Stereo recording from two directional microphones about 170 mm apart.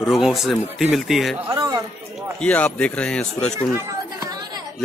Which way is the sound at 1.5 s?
20° right (ahead or behind).